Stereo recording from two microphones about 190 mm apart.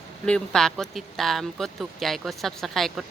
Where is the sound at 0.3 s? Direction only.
5° left (ahead or behind).